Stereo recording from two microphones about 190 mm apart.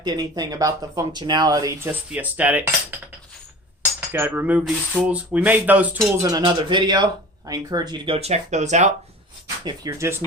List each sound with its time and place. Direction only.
0.0 s speech: 20° right (ahead or behind)
4.1 s speech: 10° right (ahead or behind)
6.2 s speech: 20° right (ahead or behind); by 8.9 s 40° right (ahead or behind)
9.6 s speech: 15° right (ahead or behind)